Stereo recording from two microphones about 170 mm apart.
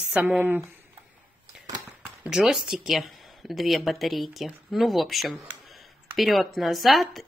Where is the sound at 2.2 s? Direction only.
5° right (ahead or behind).